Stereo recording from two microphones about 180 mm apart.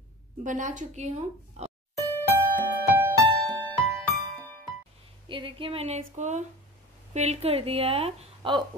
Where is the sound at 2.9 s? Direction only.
10° right (ahead or behind).